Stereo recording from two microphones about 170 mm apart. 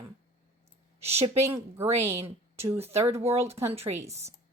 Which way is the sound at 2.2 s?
35° right (ahead or behind).